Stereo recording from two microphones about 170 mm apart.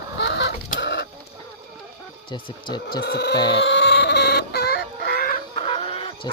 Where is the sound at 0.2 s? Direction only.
90° left.